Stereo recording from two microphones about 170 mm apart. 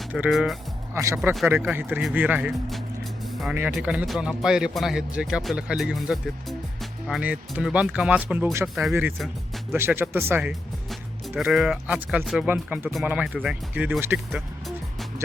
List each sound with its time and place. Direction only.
0.1 s speech: 5° right (ahead or behind)
0.9 s speech: 15° right (ahead or behind)
8.9 s speech: 15° right (ahead or behind)
11.3 s speech: centre (ahead or behind)